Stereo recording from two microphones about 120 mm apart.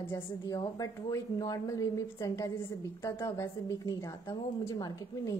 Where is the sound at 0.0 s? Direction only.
30° left (ahead or behind).